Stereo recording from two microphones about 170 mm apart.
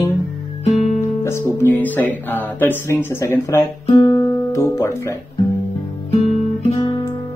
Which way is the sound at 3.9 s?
20° left (ahead or behind).